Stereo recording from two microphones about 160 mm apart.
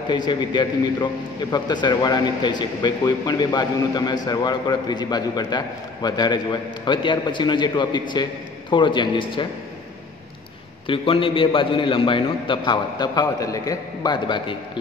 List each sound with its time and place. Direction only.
0.1 s a man's voice: 30° left (ahead or behind)
10.9 s a man's voice: 35° left (ahead or behind)